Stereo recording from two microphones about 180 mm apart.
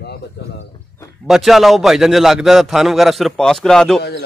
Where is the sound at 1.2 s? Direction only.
Centre (ahead or behind).